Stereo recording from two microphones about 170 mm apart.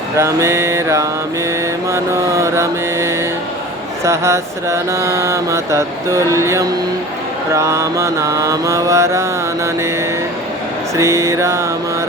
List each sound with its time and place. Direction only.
0.2 s mantra: 15° right (ahead or behind)
10.9 s mantra: 15° right (ahead or behind)